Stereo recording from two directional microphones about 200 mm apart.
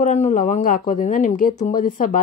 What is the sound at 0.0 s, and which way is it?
Speech, 35° left (ahead or behind).